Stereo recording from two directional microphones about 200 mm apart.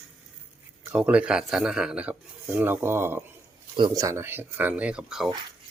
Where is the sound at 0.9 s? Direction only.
5° right (ahead or behind).